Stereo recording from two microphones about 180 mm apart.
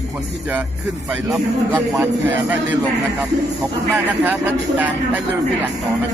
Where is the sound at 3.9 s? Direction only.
10° right (ahead or behind).